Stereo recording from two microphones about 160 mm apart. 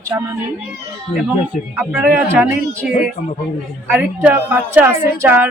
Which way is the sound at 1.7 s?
10° right (ahead or behind).